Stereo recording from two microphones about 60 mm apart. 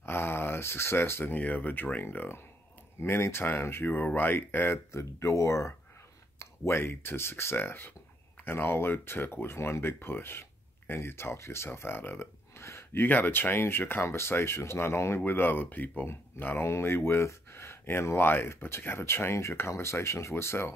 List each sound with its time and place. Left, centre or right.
0.0 s speech: left
4.9 s speech: left
13.0 s speech: left